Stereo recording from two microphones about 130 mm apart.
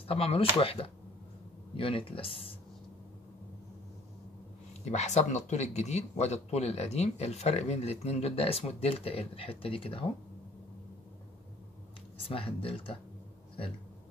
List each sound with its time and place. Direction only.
0.1 s speech: 45° left (ahead or behind)
4.8 s speech: 60° left (ahead or behind); by 10.0 s 45° left (ahead or behind)
12.3 s speech: 45° left (ahead or behind)